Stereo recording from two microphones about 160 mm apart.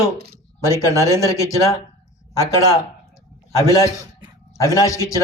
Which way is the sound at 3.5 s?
20° left (ahead or behind).